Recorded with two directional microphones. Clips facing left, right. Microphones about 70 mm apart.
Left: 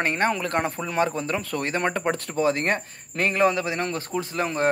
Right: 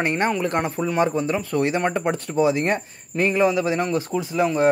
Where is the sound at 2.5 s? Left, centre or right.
Left.